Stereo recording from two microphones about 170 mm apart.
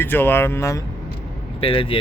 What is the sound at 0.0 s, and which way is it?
Speech, 10° left (ahead or behind).